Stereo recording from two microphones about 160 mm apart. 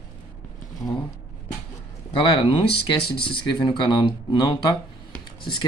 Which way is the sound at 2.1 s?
30° left (ahead or behind).